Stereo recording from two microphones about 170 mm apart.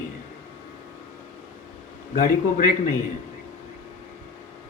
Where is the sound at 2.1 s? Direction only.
50° left (ahead or behind).